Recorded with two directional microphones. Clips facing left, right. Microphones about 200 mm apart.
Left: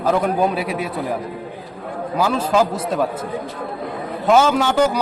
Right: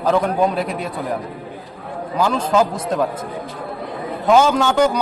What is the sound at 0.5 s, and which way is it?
Speech, 5° left (ahead or behind).